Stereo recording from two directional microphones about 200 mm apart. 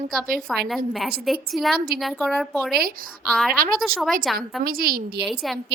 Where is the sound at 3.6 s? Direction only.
45° right (ahead or behind).